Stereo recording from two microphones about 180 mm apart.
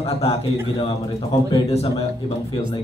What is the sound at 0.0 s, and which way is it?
A man's voice, 35° left (ahead or behind).